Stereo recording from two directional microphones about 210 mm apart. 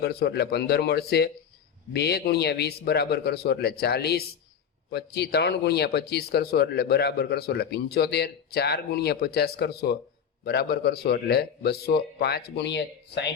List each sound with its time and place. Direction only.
0.0 s speech: 50° left (ahead or behind)